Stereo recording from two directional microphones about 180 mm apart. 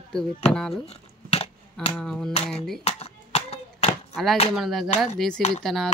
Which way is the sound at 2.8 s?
35° left (ahead or behind).